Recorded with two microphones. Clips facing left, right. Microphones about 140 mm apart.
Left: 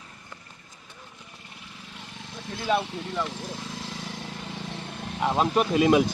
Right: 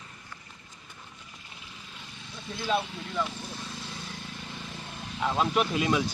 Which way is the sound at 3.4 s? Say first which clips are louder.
Left 4 dB; 90° left.